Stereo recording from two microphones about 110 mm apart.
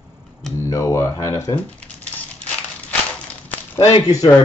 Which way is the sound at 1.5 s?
10° left (ahead or behind).